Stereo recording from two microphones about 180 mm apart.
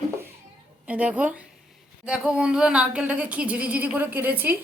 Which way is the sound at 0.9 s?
5° right (ahead or behind).